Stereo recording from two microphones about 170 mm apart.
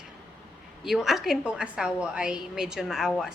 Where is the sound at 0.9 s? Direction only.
Centre (ahead or behind).